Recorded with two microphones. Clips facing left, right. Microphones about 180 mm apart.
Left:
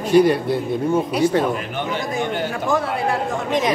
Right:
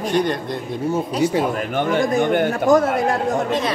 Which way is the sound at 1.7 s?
50° right (ahead or behind).